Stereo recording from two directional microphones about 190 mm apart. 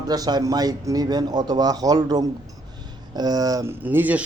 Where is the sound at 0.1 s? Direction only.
20° right (ahead or behind).